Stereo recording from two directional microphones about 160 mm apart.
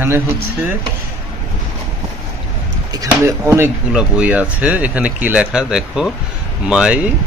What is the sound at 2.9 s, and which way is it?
Speech, 15° right (ahead or behind).